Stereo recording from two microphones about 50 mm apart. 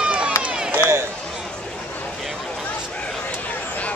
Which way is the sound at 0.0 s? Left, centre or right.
Right.